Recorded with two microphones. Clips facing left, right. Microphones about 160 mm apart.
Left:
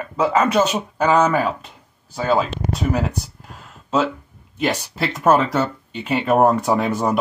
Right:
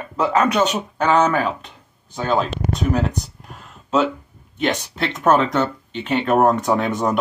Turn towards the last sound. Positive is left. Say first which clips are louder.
# even
turn(degrees=5)  # may be behind; listen again after turning